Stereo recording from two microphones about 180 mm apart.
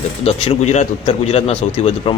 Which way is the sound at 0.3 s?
35° left (ahead or behind).